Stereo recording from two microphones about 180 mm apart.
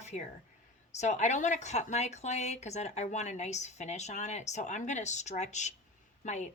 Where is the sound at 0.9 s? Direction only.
40° left (ahead or behind).